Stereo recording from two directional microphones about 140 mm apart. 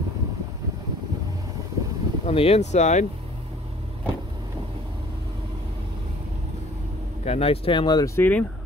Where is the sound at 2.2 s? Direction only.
45° left (ahead or behind).